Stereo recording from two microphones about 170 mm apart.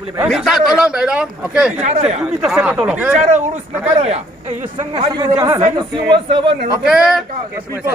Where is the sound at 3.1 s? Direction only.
45° right (ahead or behind).